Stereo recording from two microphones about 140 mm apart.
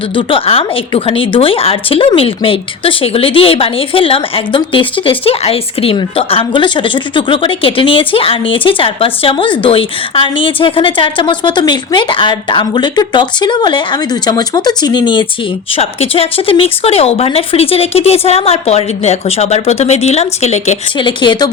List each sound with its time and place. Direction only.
0.2 s a woman's voice: 40° left (ahead or behind)
21.0 s a woman's voice: 35° left (ahead or behind)